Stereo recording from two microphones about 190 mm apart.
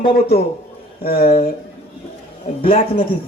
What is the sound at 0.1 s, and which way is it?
Speech, 55° left (ahead or behind).